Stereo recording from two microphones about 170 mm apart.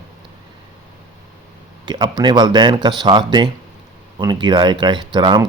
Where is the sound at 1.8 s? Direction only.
25° right (ahead or behind).